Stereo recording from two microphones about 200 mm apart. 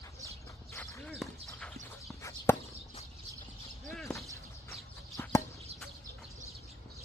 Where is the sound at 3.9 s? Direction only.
Centre (ahead or behind).